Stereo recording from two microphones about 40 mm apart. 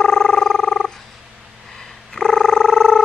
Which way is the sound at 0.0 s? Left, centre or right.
Centre.